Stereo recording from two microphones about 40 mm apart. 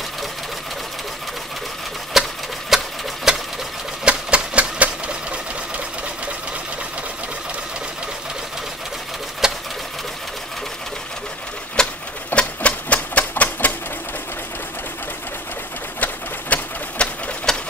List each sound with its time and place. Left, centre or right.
2.1 s a sound: centre
2.7 s sewing machine: centre
4.0 s typewriter: right
9.4 s sewing machine: centre
11.8 s bird: centre
12.4 s typewriter: left
16.5 s sewing machine: left
17.5 s sewing machine: centre